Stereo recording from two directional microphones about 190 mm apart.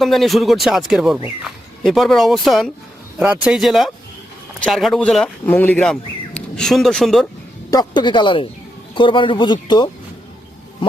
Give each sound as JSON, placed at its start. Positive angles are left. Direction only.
{"t": 0.0, "sound": "speech", "side_deg": 0}
{"t": 7.7, "sound": "speech", "side_deg": 20}